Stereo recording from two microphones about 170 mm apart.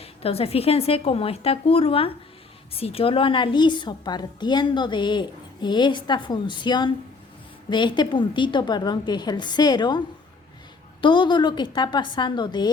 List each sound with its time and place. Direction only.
0.0 s a woman's voice: 35° left (ahead or behind)
11.0 s a woman's voice: 25° left (ahead or behind)